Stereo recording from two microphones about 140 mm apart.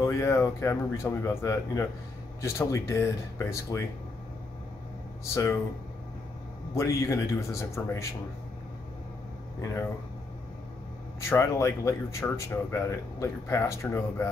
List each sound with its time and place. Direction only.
0.0 s speech: 20° left (ahead or behind)
5.3 s speech: 20° left (ahead or behind)
6.7 s speech: 20° left (ahead or behind)
11.1 s speech: 20° left (ahead or behind)